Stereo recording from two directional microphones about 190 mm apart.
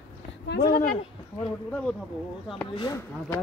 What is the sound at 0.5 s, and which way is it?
Speech, 55° left (ahead or behind).